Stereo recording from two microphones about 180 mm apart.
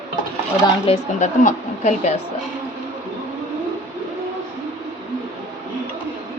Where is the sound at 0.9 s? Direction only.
40° left (ahead or behind).